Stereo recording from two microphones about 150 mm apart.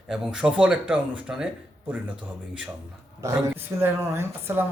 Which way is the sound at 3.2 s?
20° right (ahead or behind).